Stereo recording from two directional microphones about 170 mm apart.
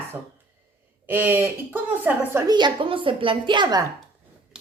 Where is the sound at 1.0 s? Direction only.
10° right (ahead or behind).